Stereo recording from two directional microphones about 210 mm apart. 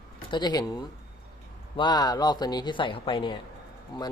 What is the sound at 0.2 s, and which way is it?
Speech, 20° left (ahead or behind).